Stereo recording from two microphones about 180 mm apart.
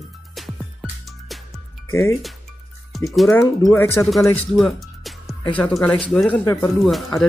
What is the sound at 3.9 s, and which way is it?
Speech, centre (ahead or behind).